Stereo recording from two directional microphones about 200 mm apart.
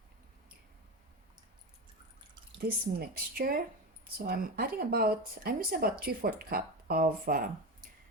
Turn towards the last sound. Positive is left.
turn(degrees=-45)  # may be behind; listen again after turning